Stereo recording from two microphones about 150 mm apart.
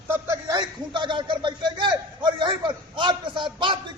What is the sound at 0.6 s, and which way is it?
A man's voice, 30° right (ahead or behind).